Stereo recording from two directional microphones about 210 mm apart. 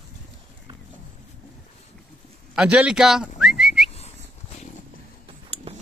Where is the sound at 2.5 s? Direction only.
5° right (ahead or behind).